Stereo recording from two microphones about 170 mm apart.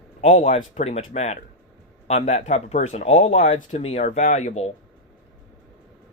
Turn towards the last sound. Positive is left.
turn(degrees=40)  # may be behind; listen again after turning